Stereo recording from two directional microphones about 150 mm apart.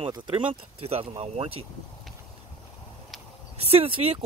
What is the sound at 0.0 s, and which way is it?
Speech, 35° right (ahead or behind).